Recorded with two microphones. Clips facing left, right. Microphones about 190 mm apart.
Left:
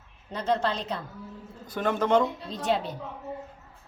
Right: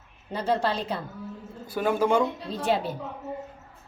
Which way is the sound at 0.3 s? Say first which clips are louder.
Right 1 dB; 10° right (ahead or behind).